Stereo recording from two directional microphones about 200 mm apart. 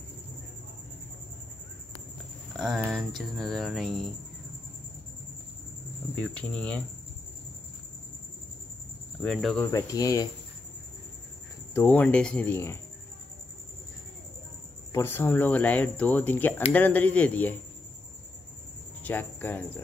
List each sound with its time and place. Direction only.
2.6 s speech: centre (ahead or behind)
6.1 s speech: 5° left (ahead or behind)
9.2 s speech: 5° left (ahead or behind)
9.7 s speech: 15° left (ahead or behind)
11.7 s speech: 10° left (ahead or behind)
14.9 s speech: 10° left (ahead or behind)
19.0 s speech: 10° left (ahead or behind)